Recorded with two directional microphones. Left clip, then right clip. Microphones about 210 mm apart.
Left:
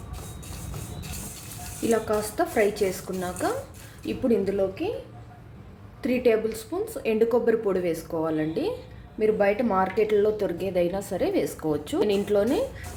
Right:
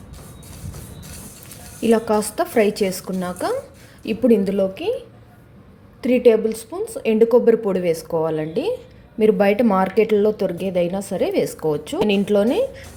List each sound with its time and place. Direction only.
1.9 s speech: 35° right (ahead or behind)
6.0 s a woman's voice: 30° right (ahead or behind)